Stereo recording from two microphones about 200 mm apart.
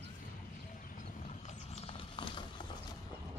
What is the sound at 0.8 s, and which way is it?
Horse, 40° left (ahead or behind).